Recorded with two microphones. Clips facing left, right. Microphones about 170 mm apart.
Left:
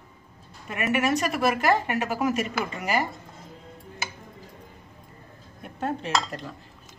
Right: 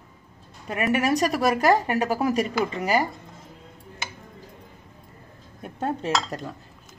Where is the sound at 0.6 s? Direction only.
35° right (ahead or behind).